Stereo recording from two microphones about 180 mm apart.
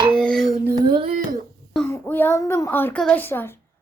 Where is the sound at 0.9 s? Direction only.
25° right (ahead or behind).